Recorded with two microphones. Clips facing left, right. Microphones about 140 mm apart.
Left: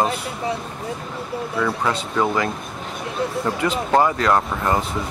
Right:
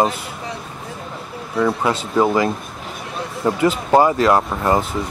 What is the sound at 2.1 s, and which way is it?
Speech, 25° right (ahead or behind).